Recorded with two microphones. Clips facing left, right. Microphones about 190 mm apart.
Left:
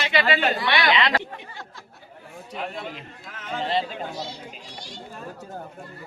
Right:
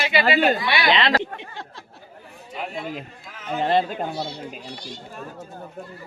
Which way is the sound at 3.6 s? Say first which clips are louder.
Right 5 dB; 55° right (ahead or behind).